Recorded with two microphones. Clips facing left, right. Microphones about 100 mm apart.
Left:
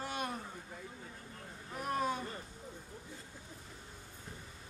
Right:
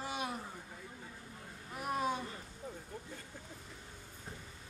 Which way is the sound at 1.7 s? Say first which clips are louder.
Even; 5° right (ahead or behind).